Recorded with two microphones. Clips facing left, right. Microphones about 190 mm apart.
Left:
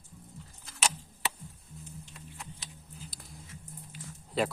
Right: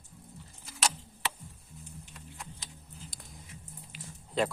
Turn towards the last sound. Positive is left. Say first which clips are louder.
# even
turn(degrees=5)  # may be behind; listen again after turning